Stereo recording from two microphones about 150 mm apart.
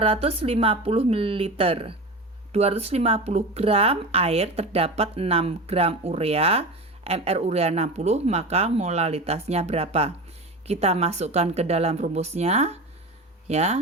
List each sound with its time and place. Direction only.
0.0 s a woman's voice: 40° right (ahead or behind)